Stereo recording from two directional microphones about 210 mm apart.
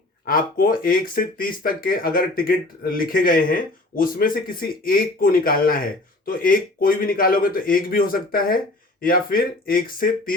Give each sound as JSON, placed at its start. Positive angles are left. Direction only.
{"t": 0.3, "sound": "speech", "side_deg": 40}